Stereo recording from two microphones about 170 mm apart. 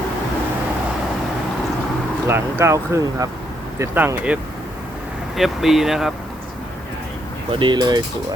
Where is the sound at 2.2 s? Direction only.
15° right (ahead or behind).